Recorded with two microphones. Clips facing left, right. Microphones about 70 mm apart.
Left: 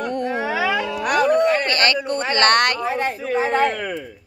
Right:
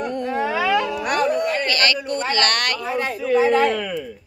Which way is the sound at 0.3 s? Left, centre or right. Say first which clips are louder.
Right 3 dB; centre.